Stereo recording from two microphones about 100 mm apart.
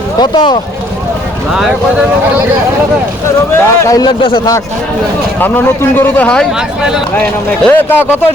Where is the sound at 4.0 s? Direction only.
60° left (ahead or behind).